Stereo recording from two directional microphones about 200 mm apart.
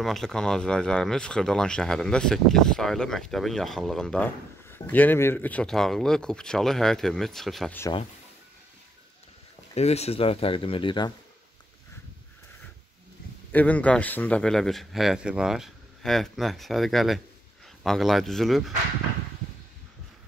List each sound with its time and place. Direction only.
0.0 s speech: centre (ahead or behind)
9.8 s speech: 30° left (ahead or behind)
13.5 s speech: 10° left (ahead or behind)